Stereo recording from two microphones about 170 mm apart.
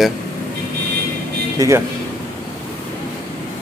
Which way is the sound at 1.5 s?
15° right (ahead or behind).